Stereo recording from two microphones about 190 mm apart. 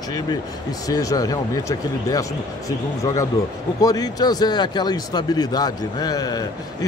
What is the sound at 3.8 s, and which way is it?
Speech, 20° left (ahead or behind).